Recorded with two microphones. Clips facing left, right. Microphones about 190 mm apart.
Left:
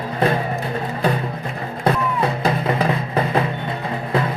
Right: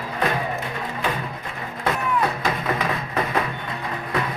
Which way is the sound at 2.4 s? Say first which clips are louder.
Left 5 dB; 30° left (ahead or behind).